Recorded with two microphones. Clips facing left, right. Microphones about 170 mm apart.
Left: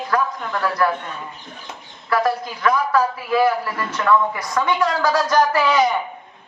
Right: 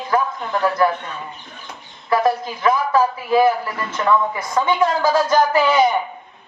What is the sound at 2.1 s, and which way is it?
A man's voice, 25° right (ahead or behind).